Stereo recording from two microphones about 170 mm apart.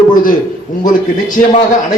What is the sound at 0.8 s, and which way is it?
Speech, 50° left (ahead or behind).